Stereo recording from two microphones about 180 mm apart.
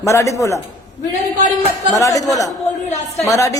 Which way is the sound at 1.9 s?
20° left (ahead or behind).